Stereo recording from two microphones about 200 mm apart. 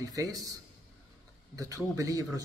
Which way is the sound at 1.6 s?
15° right (ahead or behind).